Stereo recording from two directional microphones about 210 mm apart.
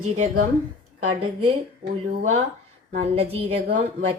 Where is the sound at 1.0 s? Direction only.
90° right.